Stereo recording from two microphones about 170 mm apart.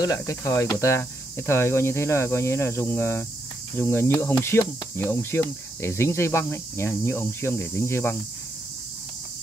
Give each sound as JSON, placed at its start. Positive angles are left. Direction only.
{"t": 0.0, "sound": "speech", "side_deg": 20}